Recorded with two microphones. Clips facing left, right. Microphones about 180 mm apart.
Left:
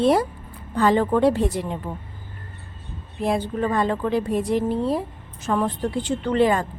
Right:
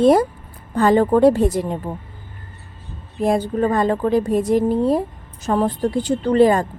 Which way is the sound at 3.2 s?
45° right (ahead or behind).